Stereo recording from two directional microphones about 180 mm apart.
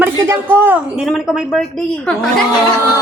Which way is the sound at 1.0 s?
Centre (ahead or behind).